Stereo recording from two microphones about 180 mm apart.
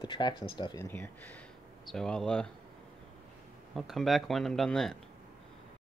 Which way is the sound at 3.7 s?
Centre (ahead or behind).